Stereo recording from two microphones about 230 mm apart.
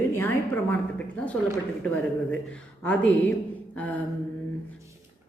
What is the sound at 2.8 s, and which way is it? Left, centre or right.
Speech, centre.